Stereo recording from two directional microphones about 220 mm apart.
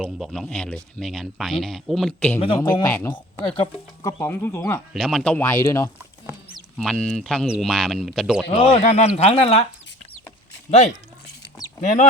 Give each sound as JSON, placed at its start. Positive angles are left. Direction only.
{"t": 0.0, "sound": "speech", "side_deg": 0}
{"t": 2.6, "sound": "speech", "side_deg": 15}
{"t": 3.5, "sound": "speech", "side_deg": 25}
{"t": 4.2, "sound": "speech", "side_deg": 10}
{"t": 4.9, "sound": "speech", "side_deg": 0}
{"t": 6.2, "sound": "speech", "side_deg": 0}
{"t": 8.5, "sound": "speech", "side_deg": 25}
{"t": 10.7, "sound": "speech", "side_deg": 30}